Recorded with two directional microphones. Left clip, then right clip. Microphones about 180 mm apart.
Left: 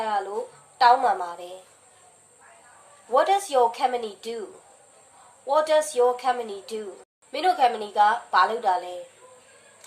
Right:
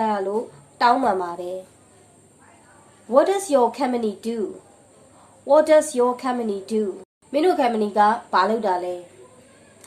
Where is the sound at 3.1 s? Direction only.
30° right (ahead or behind).